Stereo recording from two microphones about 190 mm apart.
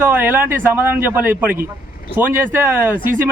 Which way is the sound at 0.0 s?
10° right (ahead or behind).